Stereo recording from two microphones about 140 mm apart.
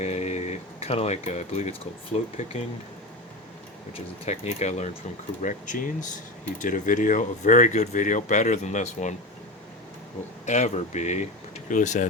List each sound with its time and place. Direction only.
0.0 s a sound: 50° left (ahead or behind)
2.1 s speech: 45° left (ahead or behind)
3.9 s speech: 50° left (ahead or behind)
5.4 s speech: 65° left (ahead or behind)
10.4 s speech: 55° left (ahead or behind)